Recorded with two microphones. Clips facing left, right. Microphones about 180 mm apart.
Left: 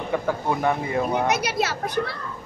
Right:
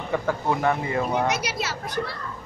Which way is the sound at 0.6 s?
15° left (ahead or behind).